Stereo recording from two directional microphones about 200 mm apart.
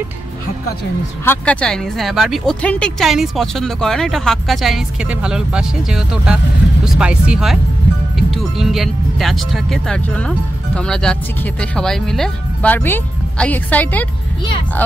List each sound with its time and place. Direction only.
1.2 s speech: 10° left (ahead or behind)